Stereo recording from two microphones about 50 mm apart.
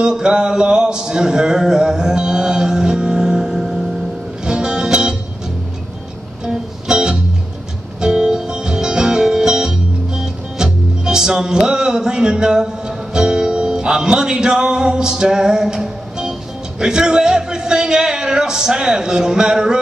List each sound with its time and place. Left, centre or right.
0.0 s a sound: centre
4.5 s music: centre
6.4 s music: centre
16.8 s a man's voice: centre